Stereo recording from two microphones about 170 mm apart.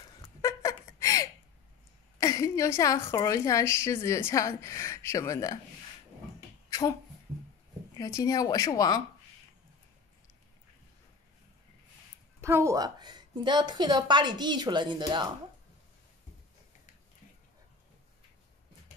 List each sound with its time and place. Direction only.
0.4 s a sound: 20° left (ahead or behind)
2.1 s a woman's voice: 20° left (ahead or behind)
6.7 s beatboxing: 20° left (ahead or behind)
8.0 s speech: 20° left (ahead or behind)
12.4 s a woman's voice: 15° right (ahead or behind)